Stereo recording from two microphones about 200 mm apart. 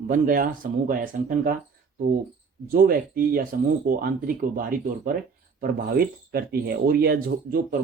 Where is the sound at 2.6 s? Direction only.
45° right (ahead or behind).